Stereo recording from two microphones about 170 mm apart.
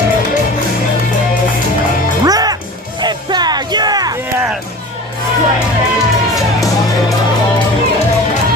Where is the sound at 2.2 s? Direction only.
20° right (ahead or behind).